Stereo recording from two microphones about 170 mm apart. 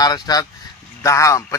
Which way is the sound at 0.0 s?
20° left (ahead or behind).